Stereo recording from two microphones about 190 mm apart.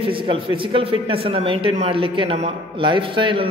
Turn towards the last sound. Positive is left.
turn(degrees=-25)  # may be behind; listen again after turning